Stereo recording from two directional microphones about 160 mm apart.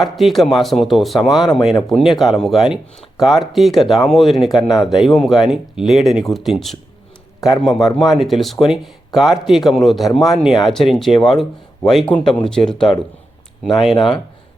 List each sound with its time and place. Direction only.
0.0 s speech: centre (ahead or behind)
13.9 s speech: 30° left (ahead or behind)